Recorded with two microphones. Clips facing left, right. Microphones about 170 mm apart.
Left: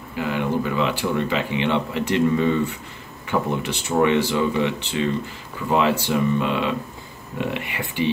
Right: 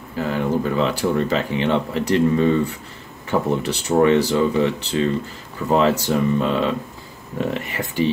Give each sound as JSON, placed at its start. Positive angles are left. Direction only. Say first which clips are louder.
{"t": 0.1, "sound": "speech", "louder": "right 2 dB", "side_deg": -40}